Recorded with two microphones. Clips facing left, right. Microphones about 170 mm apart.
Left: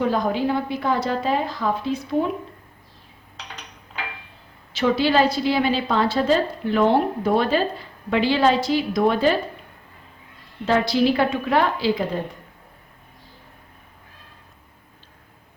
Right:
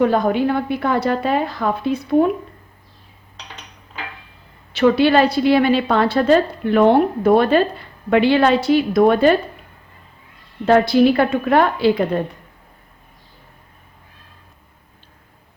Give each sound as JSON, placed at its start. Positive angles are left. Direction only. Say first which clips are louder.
{"t": 0.0, "sound": "a woman's voice", "louder": "right 5 dB", "side_deg": -60}
{"t": 4.7, "sound": "a woman's voice", "louder": "right 6 dB", "side_deg": -60}
{"t": 10.7, "sound": "a woman's voice", "louder": "right 6 dB", "side_deg": -55}